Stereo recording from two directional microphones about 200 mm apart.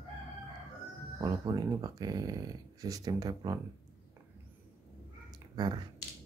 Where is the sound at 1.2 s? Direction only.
20° right (ahead or behind).